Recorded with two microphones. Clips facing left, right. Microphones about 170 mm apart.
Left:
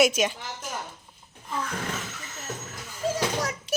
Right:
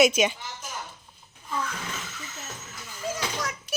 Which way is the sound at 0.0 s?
5° left (ahead or behind).